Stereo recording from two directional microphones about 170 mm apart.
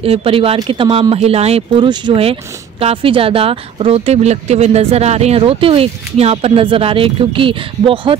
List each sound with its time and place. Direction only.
0.0 s speech: 35° right (ahead or behind)